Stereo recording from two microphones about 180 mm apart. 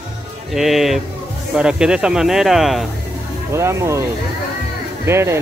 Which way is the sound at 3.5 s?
15° right (ahead or behind).